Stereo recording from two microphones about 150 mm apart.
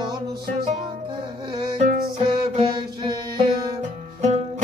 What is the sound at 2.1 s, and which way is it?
Music, 40° right (ahead or behind).